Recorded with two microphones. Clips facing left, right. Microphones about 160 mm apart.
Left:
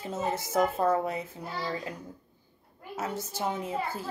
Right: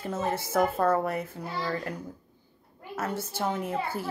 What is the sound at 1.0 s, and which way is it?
Speech, 65° right (ahead or behind).